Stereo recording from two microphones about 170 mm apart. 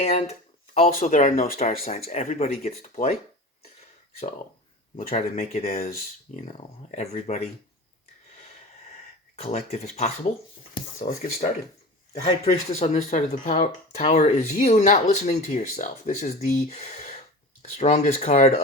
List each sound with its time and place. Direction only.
0.0 s speech: 40° left (ahead or behind)
4.9 s speech: 50° left (ahead or behind)
9.3 s speech: 40° left (ahead or behind)
12.5 s speech: 40° left (ahead or behind)